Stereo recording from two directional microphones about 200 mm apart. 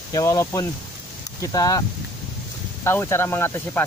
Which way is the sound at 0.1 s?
15° left (ahead or behind).